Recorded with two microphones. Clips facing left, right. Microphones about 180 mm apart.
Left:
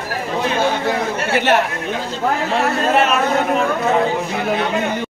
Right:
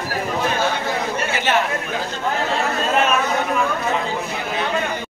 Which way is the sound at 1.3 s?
60° left (ahead or behind).